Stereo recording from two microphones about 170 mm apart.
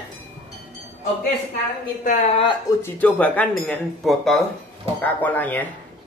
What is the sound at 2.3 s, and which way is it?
Speech, 30° left (ahead or behind).